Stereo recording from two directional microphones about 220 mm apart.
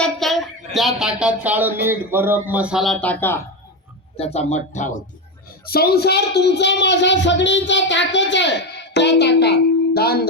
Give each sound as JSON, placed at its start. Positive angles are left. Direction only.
{"t": 0.0, "sound": "speech", "side_deg": 0}
{"t": 4.2, "sound": "speech", "side_deg": 30}
{"t": 5.6, "sound": "speech", "side_deg": 45}